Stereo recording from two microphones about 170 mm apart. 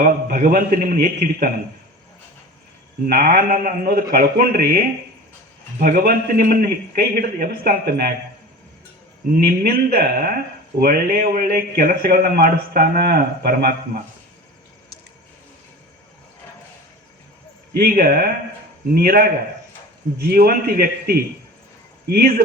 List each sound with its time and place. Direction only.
0.0 s a man's voice: 55° right (ahead or behind)
3.1 s a man's voice: 60° right (ahead or behind)
5.8 s a man's voice: 60° right (ahead or behind)
9.4 s a man's voice: 60° right (ahead or behind)
17.7 s a man's voice: 60° right (ahead or behind)